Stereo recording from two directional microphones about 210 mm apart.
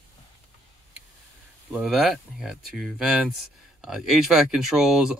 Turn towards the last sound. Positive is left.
turn(degrees=0)  # may be behind; listen again after turning